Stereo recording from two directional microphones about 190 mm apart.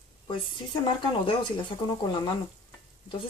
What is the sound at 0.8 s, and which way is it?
Speech, 25° left (ahead or behind).